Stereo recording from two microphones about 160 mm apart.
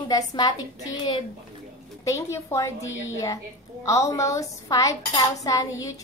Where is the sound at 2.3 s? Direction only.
20° left (ahead or behind).